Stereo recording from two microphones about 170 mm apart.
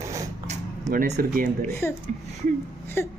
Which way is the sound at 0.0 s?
20° right (ahead or behind).